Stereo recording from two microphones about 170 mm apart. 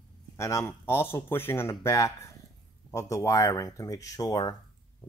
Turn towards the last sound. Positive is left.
turn(degrees=20)  # may be behind; listen again after turning